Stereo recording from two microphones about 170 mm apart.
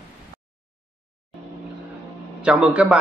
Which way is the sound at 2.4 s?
5° right (ahead or behind).